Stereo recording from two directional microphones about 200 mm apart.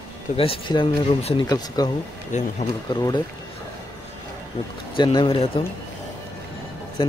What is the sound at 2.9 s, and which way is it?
Speech, 20° left (ahead or behind).